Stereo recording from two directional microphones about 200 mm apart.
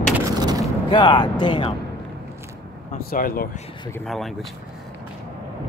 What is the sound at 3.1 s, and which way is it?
Speech, 45° left (ahead or behind).